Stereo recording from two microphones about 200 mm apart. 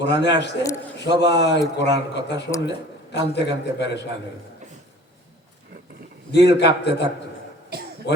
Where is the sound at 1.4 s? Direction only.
60° left (ahead or behind).